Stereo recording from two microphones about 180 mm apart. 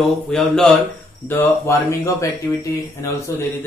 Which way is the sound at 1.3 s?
15° left (ahead or behind).